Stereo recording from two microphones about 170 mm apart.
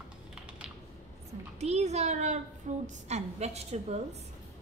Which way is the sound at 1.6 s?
40° right (ahead or behind).